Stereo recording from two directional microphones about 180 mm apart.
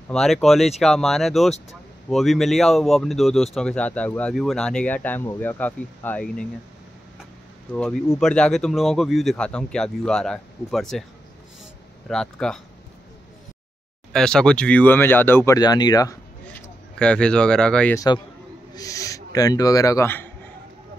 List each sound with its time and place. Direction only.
0.1 s speech: centre (ahead or behind)
7.7 s speech: 5° left (ahead or behind)
12.1 s speech: 5° left (ahead or behind)
14.1 s speech: 5° left (ahead or behind); by 16.2 s 20° left (ahead or behind)
17.0 s speech: 5° left (ahead or behind)
17.9 s a man's voice: 20° left (ahead or behind)